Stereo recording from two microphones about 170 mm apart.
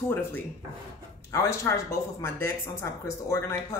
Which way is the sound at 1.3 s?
15° left (ahead or behind).